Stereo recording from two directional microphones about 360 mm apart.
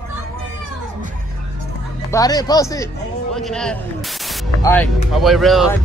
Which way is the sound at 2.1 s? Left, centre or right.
Centre.